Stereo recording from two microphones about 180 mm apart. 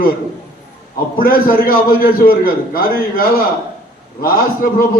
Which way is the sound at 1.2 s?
55° left (ahead or behind).